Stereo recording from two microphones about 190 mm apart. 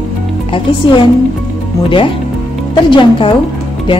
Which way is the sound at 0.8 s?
25° left (ahead or behind).